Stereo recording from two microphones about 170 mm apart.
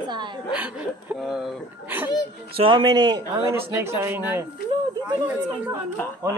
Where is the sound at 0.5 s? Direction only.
5° right (ahead or behind).